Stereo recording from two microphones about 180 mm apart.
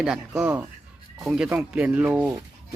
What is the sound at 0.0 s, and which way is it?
Speech, 5° right (ahead or behind).